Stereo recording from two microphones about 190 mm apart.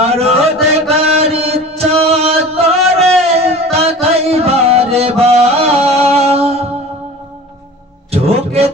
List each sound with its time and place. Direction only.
0.0 s chant: 30° right (ahead or behind)
3.3 s a sound: 35° right (ahead or behind)
3.7 s music: 35° right (ahead or behind)
8.1 s music: 30° right (ahead or behind)